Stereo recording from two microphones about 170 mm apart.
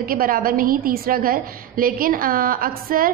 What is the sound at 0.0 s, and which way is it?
A woman's voice, 60° right (ahead or behind).